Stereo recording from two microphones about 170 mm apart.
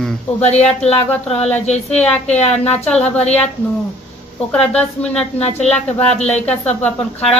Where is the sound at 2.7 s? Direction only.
5° left (ahead or behind).